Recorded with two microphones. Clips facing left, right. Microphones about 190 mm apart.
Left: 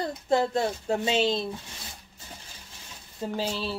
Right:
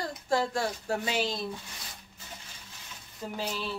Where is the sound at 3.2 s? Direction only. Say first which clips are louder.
Left 5 dB; 30° left (ahead or behind).